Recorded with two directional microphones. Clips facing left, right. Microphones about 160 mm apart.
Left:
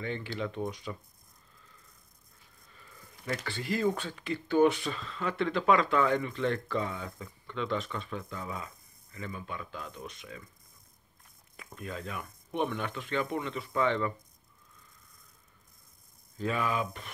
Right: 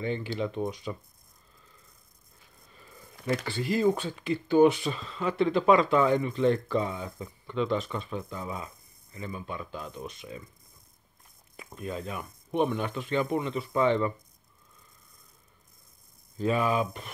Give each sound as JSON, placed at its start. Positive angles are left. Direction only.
{"t": 0.0, "sound": "speech", "side_deg": -15}
{"t": 3.5, "sound": "speech", "side_deg": -25}
{"t": 11.5, "sound": "speech", "side_deg": -25}
{"t": 16.3, "sound": "speech", "side_deg": -25}